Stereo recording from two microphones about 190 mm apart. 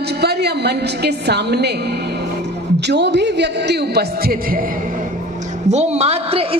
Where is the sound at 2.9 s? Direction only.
65° right (ahead or behind).